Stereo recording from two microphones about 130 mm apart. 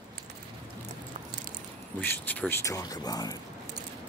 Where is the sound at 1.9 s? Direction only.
15° left (ahead or behind).